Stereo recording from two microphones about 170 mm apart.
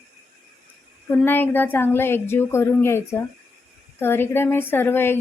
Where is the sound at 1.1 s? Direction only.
10° left (ahead or behind).